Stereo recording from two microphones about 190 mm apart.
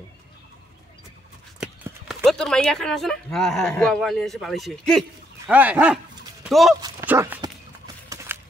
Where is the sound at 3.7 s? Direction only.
5° left (ahead or behind).